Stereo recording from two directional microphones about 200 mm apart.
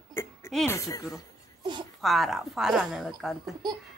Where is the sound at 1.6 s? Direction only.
20° right (ahead or behind).